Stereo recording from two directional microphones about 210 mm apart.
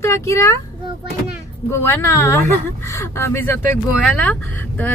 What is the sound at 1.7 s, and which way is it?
Speech, 10° left (ahead or behind).